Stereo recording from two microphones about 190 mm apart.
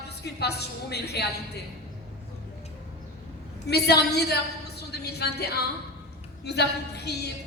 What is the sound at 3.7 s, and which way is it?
A woman's voice, 60° left (ahead or behind).